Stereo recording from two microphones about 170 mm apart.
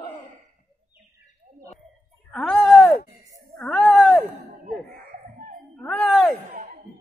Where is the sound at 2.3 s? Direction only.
5° left (ahead or behind).